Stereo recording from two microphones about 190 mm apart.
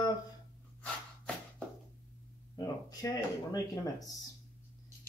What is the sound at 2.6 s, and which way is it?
Speech, 20° left (ahead or behind).